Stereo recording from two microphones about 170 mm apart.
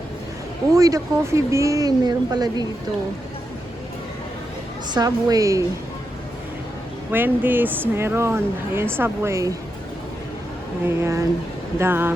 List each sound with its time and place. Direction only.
0.7 s speech: 20° right (ahead or behind)
4.9 s speech: 20° right (ahead or behind)
7.1 s speech: 10° right (ahead or behind)
10.8 s speech: 15° right (ahead or behind)